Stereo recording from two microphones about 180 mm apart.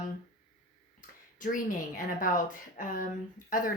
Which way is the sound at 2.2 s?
50° left (ahead or behind).